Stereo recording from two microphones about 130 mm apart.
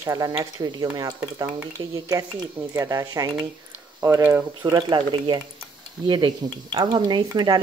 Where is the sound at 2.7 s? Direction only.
25° right (ahead or behind).